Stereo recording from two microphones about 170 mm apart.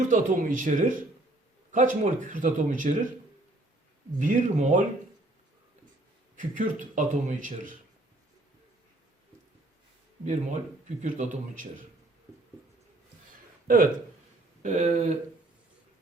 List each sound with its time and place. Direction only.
0.1 s a man's voice: 50° right (ahead or behind)
4.2 s a man's voice: 50° right (ahead or behind)
6.3 s a man's voice: 50° right (ahead or behind)
10.2 s a man's voice: 45° right (ahead or behind)
14.6 s a man's voice: 45° right (ahead or behind)